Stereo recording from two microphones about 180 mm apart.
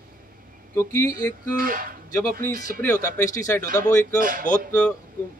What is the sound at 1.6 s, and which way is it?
Speech, 50° right (ahead or behind).